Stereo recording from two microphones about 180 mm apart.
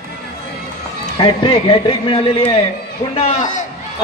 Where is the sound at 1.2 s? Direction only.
30° left (ahead or behind).